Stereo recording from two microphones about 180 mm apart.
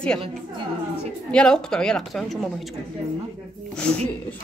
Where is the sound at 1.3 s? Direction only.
5° left (ahead or behind).